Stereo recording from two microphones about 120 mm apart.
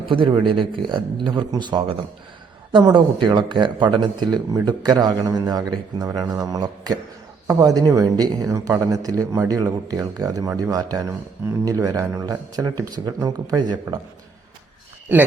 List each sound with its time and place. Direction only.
0.1 s speech: 40° right (ahead or behind)